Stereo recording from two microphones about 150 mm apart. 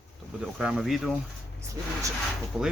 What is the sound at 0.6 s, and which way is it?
Speech, 5° right (ahead or behind).